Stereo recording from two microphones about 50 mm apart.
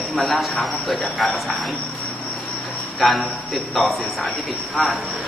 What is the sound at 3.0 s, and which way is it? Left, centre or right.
A man's voice, centre.